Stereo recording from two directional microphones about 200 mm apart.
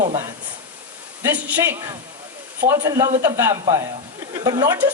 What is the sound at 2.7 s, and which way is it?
A woman's voice, 20° right (ahead or behind).